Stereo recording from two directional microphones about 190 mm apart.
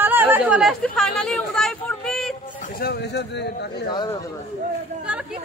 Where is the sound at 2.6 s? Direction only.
55° left (ahead or behind).